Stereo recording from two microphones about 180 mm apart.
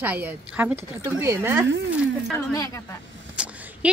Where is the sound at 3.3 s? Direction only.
5° right (ahead or behind).